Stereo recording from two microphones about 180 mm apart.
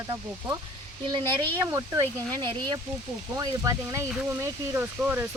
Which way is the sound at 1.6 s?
15° right (ahead or behind).